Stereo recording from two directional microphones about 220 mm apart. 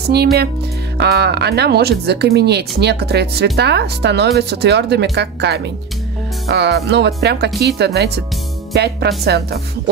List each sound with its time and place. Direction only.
0.1 s speech: 45° right (ahead or behind)